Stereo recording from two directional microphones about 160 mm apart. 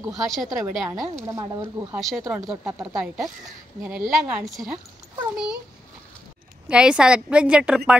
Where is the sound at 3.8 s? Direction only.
5° right (ahead or behind).